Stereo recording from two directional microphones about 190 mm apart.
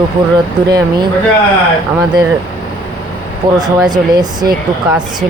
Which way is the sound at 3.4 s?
15° right (ahead or behind).